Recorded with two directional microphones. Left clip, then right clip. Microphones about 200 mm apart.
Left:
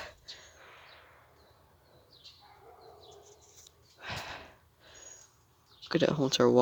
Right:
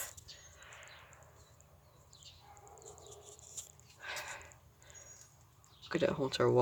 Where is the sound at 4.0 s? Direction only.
30° left (ahead or behind).